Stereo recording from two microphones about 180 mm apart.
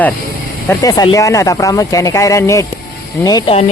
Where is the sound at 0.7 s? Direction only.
20° left (ahead or behind).